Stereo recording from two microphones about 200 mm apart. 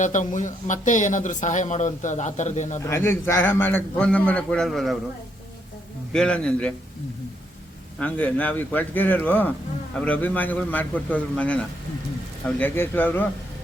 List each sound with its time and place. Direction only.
0.0 s speech: 40° left (ahead or behind)
2.8 s a man's voice: 15° left (ahead or behind)
6.1 s a man's voice: 5° left (ahead or behind)
7.9 s a man's voice: 5° left (ahead or behind)